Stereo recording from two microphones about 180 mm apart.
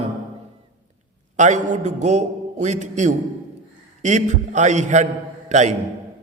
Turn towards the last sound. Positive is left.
turn(degrees=-40)  # may be behind; listen again after turning